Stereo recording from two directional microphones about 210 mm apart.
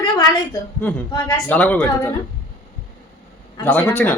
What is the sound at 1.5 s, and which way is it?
Speech, 5° left (ahead or behind).